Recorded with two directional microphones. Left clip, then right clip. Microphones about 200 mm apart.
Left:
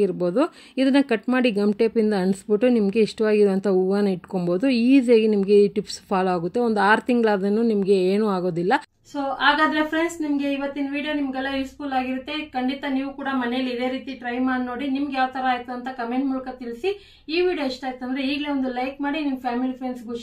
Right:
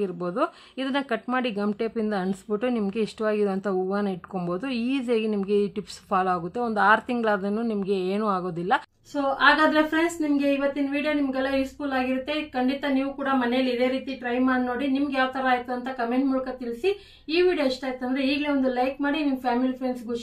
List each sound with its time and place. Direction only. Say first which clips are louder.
0.0 s speech: left 5 dB; 35° left (ahead or behind)
9.1 s a woman's voice: even; centre (ahead or behind)